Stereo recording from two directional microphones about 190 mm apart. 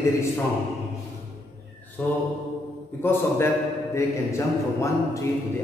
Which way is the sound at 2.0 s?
5° left (ahead or behind).